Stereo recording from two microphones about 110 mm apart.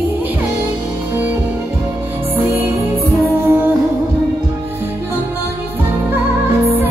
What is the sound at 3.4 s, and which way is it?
Music, 20° right (ahead or behind).